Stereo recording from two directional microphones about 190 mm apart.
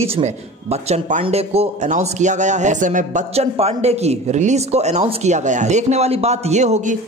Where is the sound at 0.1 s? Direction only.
35° right (ahead or behind).